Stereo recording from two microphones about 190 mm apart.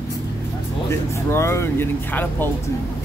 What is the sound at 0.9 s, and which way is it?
Speech, 15° left (ahead or behind).